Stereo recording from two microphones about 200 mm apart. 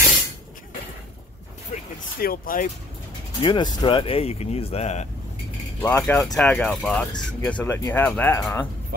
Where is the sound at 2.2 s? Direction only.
45° left (ahead or behind).